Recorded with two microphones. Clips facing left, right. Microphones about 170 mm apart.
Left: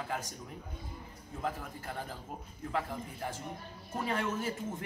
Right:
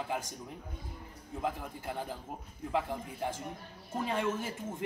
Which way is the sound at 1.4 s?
15° right (ahead or behind).